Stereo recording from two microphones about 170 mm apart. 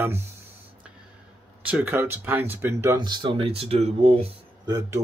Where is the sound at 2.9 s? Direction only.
25° right (ahead or behind).